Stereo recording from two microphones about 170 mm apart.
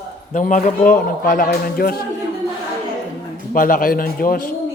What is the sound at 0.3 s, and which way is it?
A man's voice, 50° left (ahead or behind).